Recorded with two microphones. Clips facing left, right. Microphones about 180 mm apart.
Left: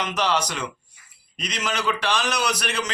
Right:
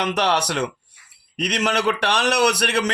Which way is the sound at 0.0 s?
65° right (ahead or behind).